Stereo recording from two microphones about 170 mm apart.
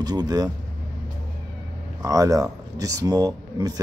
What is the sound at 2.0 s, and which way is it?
Speech, 20° right (ahead or behind).